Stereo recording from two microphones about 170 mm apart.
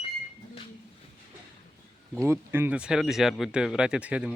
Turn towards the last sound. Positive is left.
turn(degrees=-5)  # may be behind; listen again after turning